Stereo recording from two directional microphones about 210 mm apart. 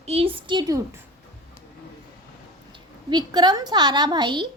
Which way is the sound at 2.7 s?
20° right (ahead or behind).